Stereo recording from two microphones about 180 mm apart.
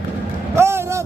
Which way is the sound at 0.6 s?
15° right (ahead or behind).